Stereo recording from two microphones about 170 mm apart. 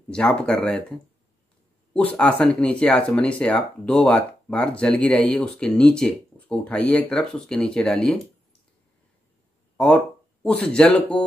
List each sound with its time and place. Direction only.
0.1 s speech: 5° left (ahead or behind)
2.0 s speech: 5° left (ahead or behind)
10.4 s speech: 5° left (ahead or behind)